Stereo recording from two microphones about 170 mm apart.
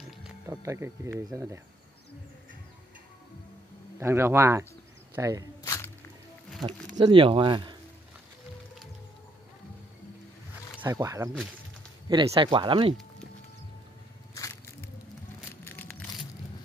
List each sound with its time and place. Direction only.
0.5 s speech: 15° right (ahead or behind)
4.0 s speech: 15° right (ahead or behind)
5.6 s squish: 20° left (ahead or behind)
6.9 s speech: 25° right (ahead or behind)
10.8 s speech: 20° right (ahead or behind)
12.1 s speech: 30° right (ahead or behind)
14.3 s music: 20° left (ahead or behind)
15.6 s a sound: 10° left (ahead or behind)